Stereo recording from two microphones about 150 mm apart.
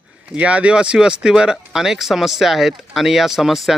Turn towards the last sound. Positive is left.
turn(degrees=0)  # may be behind; listen again after turning